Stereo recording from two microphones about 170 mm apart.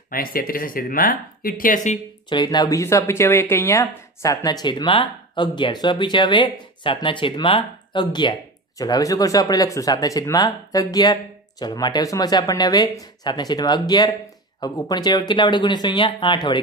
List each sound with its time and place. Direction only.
0.1 s speech: 55° left (ahead or behind)
2.2 s speech: 25° left (ahead or behind)